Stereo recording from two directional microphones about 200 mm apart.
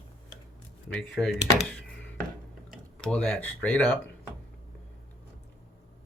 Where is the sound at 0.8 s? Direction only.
5° left (ahead or behind).